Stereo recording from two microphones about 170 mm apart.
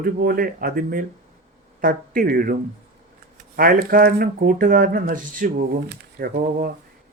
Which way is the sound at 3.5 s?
60° right (ahead or behind).